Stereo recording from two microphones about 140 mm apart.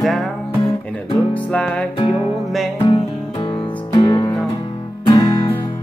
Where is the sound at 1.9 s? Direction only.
35° left (ahead or behind).